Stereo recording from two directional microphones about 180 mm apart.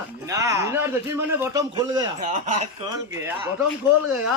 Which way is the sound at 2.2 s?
40° right (ahead or behind).